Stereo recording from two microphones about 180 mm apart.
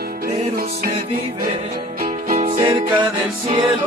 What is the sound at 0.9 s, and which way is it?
Music, 35° right (ahead or behind).